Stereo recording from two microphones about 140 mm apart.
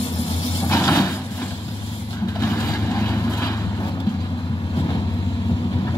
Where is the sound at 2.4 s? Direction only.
20° left (ahead or behind).